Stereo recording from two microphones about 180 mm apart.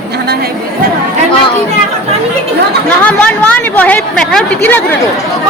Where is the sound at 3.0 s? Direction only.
10° left (ahead or behind).